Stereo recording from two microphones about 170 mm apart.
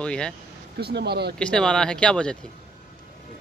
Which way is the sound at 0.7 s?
70° right (ahead or behind).